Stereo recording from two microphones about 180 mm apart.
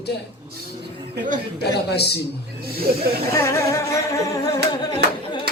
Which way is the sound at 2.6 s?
60° right (ahead or behind).